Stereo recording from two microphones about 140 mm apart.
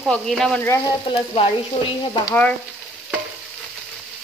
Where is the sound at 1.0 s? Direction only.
40° left (ahead or behind).